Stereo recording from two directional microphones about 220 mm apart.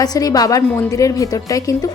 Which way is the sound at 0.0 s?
15° left (ahead or behind).